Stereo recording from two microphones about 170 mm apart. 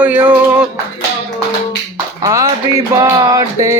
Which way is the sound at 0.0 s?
10° right (ahead or behind).